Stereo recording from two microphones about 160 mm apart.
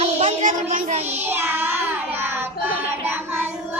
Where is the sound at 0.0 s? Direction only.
40° right (ahead or behind).